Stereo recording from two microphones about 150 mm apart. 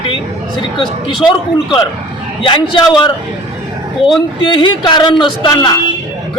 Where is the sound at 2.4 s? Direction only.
35° left (ahead or behind).